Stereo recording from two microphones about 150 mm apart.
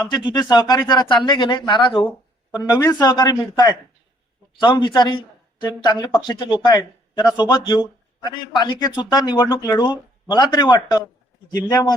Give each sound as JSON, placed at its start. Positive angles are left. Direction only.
{"t": 0.0, "sound": "speech", "side_deg": 30}